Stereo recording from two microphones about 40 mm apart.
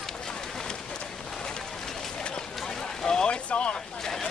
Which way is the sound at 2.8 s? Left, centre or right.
Centre.